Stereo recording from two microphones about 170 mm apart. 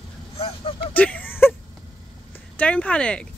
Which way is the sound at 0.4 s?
35° left (ahead or behind).